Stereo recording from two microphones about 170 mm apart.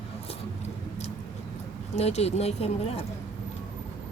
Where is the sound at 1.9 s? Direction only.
40° left (ahead or behind).